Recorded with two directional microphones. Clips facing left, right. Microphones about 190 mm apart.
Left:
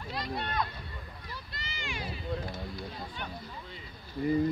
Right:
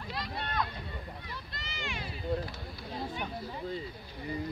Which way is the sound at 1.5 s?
Centre (ahead or behind).